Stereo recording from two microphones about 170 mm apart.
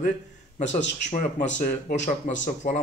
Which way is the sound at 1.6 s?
55° left (ahead or behind).